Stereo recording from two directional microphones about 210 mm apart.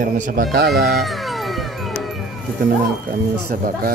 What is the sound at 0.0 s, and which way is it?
Speech, 45° right (ahead or behind).